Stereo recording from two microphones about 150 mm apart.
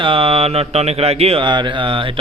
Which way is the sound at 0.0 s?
35° right (ahead or behind).